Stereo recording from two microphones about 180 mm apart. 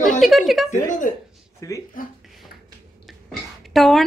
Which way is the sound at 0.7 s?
45° left (ahead or behind).